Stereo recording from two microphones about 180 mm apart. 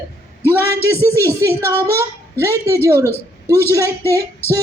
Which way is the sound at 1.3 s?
15° right (ahead or behind).